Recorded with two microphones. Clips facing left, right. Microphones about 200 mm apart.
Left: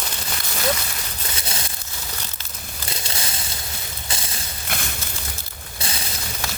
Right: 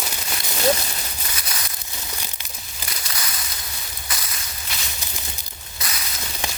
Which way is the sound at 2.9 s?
25° left (ahead or behind).